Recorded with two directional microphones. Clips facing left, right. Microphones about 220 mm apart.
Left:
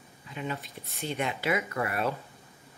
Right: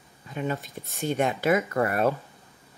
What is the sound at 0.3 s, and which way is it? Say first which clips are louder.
Speech: right 6 dB; 45° right (ahead or behind).